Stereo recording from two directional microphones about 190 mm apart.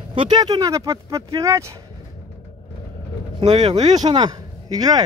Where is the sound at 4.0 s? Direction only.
20° right (ahead or behind).